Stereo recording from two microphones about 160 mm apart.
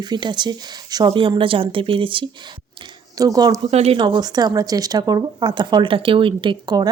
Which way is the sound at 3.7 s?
40° right (ahead or behind).